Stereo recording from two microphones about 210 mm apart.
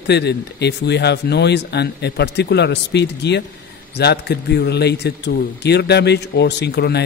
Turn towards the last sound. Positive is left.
turn(degrees=50)  # may be behind; listen again after turning